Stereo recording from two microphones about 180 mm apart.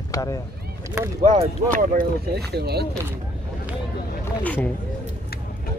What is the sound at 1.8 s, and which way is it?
Speech, 55° right (ahead or behind).